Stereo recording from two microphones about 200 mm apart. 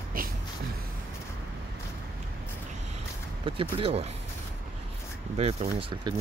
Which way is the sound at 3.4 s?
25° right (ahead or behind).